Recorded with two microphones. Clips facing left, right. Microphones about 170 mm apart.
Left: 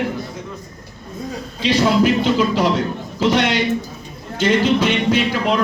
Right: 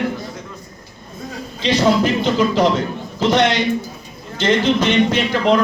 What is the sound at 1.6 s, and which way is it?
Speech, 10° left (ahead or behind).